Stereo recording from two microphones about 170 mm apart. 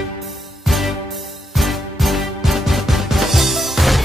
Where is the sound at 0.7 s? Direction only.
Centre (ahead or behind).